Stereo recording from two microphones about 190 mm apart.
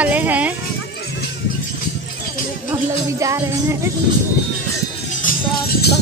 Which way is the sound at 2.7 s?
15° right (ahead or behind).